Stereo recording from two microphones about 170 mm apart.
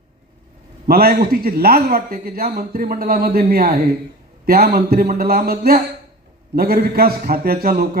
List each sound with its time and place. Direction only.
0.9 s a man's voice: 65° right (ahead or behind)